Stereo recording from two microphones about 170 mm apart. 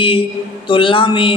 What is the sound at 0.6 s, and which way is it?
Speech, 30° left (ahead or behind).